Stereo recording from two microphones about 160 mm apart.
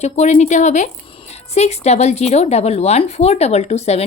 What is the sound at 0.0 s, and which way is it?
A woman's voice, 45° left (ahead or behind).